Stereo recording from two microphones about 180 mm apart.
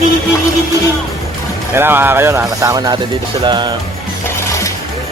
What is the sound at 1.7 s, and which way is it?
Speech, 10° right (ahead or behind).